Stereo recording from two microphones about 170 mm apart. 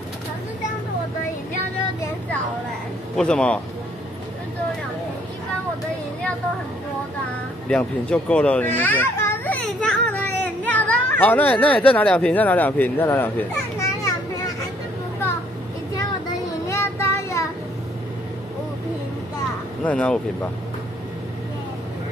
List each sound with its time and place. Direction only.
3.2 s a man's voice: 5° left (ahead or behind)
7.7 s a child's voice: 5° left (ahead or behind)
16.6 s child singing: 15° left (ahead or behind)
19.8 s speech: 10° left (ahead or behind)